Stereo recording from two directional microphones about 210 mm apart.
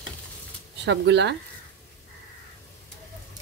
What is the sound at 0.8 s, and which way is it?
Speech, 55° right (ahead or behind).